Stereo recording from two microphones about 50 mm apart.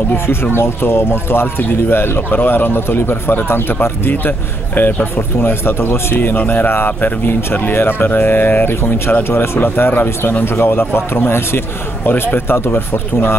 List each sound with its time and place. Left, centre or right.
0.6 s speech: left
5.1 s speech: left